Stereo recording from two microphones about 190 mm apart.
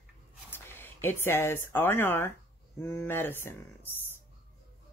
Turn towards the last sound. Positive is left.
turn(degrees=10)  # may be behind; listen again after turning